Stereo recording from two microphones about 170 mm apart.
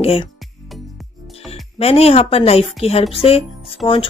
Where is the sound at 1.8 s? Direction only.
35° left (ahead or behind).